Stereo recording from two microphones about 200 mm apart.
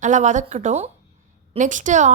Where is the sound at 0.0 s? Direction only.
40° right (ahead or behind).